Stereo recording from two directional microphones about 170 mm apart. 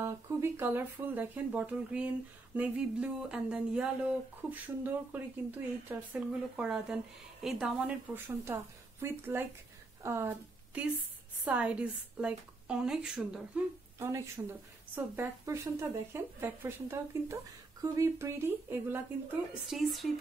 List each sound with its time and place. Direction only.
0.0 s speech: 15° right (ahead or behind)
13.9 s speech: 15° right (ahead or behind)
19.7 s speech: centre (ahead or behind)